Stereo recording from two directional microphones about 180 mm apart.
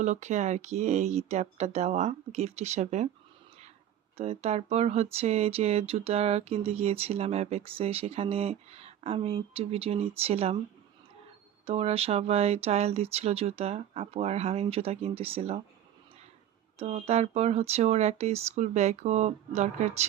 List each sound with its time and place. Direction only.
0.0 s speech: 40° right (ahead or behind)
4.2 s speech: 35° right (ahead or behind)
11.6 s speech: 35° right (ahead or behind)
16.7 s speech: 35° right (ahead or behind)